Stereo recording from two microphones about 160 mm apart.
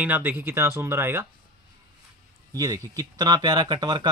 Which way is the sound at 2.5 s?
20° right (ahead or behind).